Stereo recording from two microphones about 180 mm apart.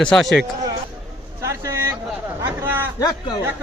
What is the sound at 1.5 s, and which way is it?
A man's voice, 15° right (ahead or behind).